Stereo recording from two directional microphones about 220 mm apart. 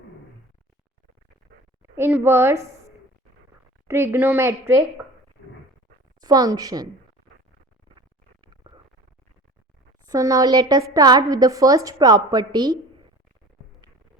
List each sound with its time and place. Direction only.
1.8 s a woman's voice: 10° right (ahead or behind)
3.8 s a woman's voice: 10° right (ahead or behind)
6.1 s a woman's voice: 15° right (ahead or behind)
10.1 s a woman's voice: 15° right (ahead or behind)